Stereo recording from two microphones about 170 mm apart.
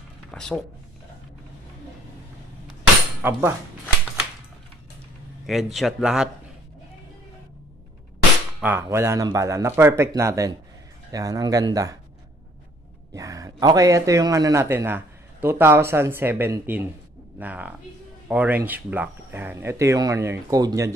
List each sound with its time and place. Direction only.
0.3 s speech: 5° left (ahead or behind)
3.2 s speech: 10° right (ahead or behind)
5.5 s speech: centre (ahead or behind)
8.5 s a man's voice: 10° right (ahead or behind)
13.1 s a man's voice: 20° right (ahead or behind)